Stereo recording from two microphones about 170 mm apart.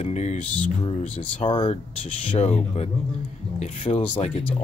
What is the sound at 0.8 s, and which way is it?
Speech, 30° left (ahead or behind).